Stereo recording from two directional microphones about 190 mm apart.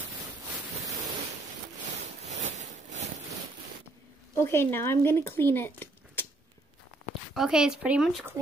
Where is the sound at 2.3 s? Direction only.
40° right (ahead or behind).